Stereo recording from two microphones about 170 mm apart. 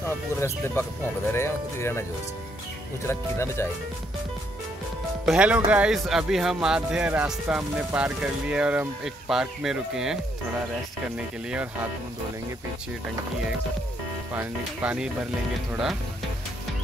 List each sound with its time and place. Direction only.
0.0 s speech: 15° left (ahead or behind)
3.1 s speech: 15° left (ahead or behind)
5.2 s speech: 5° right (ahead or behind)
14.3 s speech: 10° right (ahead or behind)